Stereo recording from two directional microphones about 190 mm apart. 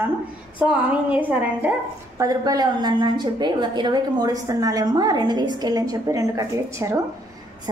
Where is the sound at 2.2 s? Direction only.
20° right (ahead or behind).